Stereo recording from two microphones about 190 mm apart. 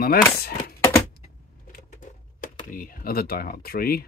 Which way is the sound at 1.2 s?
40° left (ahead or behind).